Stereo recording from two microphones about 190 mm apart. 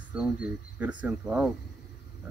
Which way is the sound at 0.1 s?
5° right (ahead or behind).